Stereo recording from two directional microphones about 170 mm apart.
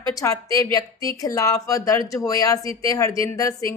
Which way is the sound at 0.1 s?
20° left (ahead or behind).